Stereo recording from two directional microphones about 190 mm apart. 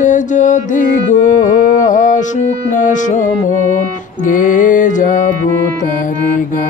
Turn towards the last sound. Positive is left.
turn(degrees=40)  # may be behind; listen again after turning